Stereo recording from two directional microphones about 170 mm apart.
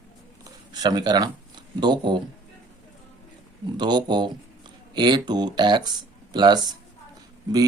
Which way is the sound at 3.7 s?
25° right (ahead or behind).